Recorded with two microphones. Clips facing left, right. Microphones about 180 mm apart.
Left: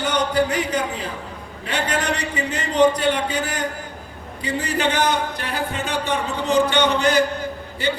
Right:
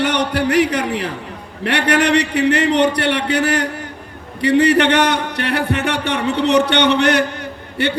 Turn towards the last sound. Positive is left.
turn(degrees=-70)  # may be behind; listen again after turning